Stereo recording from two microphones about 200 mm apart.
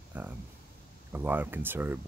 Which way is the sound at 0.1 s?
10° right (ahead or behind).